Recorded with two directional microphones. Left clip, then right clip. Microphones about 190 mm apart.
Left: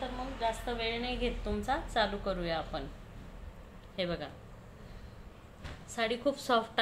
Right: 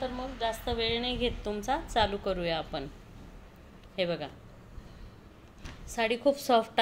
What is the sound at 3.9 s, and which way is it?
Speech, 30° right (ahead or behind).